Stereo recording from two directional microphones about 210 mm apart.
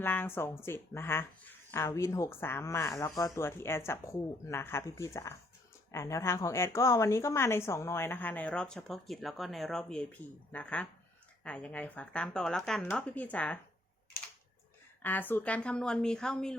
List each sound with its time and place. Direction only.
0.0 s speech: 10° left (ahead or behind)
15.0 s speech: 10° left (ahead or behind)